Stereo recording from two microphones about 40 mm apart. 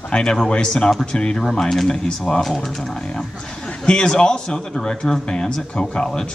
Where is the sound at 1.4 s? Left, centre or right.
Centre.